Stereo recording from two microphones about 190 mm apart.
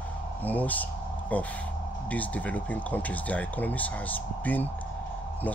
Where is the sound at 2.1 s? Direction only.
10° left (ahead or behind).